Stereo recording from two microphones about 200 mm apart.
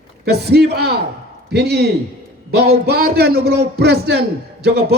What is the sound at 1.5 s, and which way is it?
Speech, 55° right (ahead or behind).